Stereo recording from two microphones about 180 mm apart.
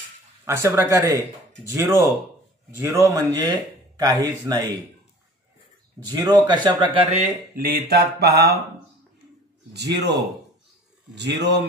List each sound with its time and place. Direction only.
0.5 s speech: 15° right (ahead or behind)
3.1 s speech: 20° right (ahead or behind)
6.2 s speech: 25° right (ahead or behind)
7.5 s speech: 60° right (ahead or behind)
9.8 s speech: 70° right (ahead or behind)